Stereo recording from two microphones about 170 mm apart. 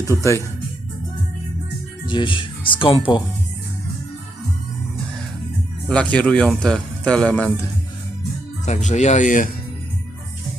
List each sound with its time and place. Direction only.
0.1 s speech: 15° left (ahead or behind)
2.0 s speech: 30° left (ahead or behind)
5.9 s speech: 5° left (ahead or behind)
8.6 s speech: 45° left (ahead or behind)